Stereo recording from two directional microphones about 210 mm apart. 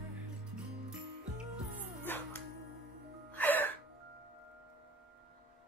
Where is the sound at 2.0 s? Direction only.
10° left (ahead or behind).